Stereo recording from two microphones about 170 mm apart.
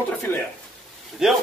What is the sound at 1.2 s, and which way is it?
Speech, 5° right (ahead or behind).